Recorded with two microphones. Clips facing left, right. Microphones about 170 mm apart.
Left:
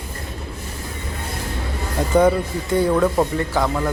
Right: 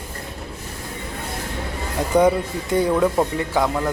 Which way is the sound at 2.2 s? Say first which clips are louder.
Left 1 dB; 15° right (ahead or behind).